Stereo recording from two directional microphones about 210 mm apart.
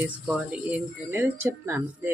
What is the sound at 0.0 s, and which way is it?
Speech, 5° right (ahead or behind).